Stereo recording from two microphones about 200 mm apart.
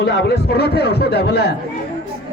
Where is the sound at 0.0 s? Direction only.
55° left (ahead or behind).